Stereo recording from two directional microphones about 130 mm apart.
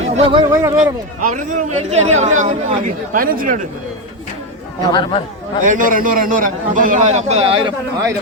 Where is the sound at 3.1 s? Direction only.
90° right.